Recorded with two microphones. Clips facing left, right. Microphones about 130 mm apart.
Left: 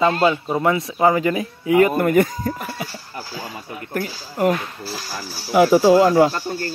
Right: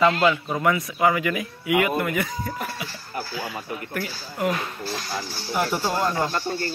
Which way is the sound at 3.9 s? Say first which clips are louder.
Left 9 dB; 45° left (ahead or behind).